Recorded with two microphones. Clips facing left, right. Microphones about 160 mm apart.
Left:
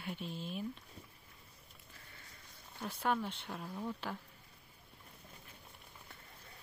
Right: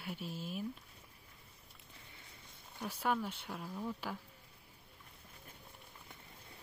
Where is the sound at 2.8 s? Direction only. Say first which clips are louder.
Even; 10° right (ahead or behind).